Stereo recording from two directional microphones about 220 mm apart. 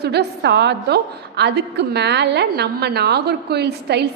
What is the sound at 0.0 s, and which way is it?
A woman's voice, 50° right (ahead or behind).